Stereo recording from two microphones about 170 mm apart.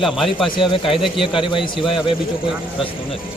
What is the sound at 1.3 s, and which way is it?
Speech, 30° left (ahead or behind).